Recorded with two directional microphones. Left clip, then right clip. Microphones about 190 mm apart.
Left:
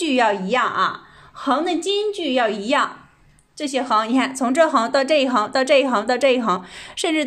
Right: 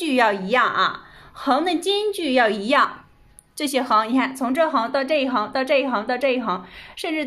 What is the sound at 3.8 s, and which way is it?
A woman's voice, centre (ahead or behind).